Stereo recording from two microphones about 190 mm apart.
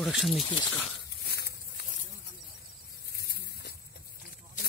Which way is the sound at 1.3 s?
60° left (ahead or behind).